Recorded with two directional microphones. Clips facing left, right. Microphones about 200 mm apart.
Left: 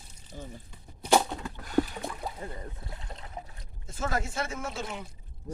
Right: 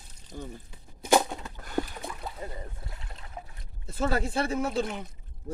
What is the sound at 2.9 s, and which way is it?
Speech, 25° left (ahead or behind).